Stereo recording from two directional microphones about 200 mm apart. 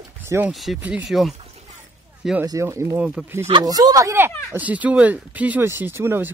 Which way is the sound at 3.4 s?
20° right (ahead or behind).